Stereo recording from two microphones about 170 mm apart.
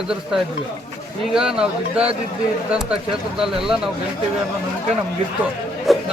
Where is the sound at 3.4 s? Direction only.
5° right (ahead or behind).